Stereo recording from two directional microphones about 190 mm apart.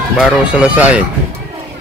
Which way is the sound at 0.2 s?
5° right (ahead or behind).